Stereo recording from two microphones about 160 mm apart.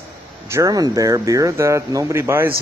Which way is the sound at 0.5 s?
20° right (ahead or behind).